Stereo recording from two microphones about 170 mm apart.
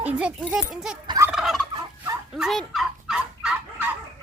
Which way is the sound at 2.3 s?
Centre (ahead or behind).